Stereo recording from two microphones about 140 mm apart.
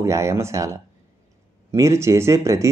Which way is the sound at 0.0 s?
20° right (ahead or behind).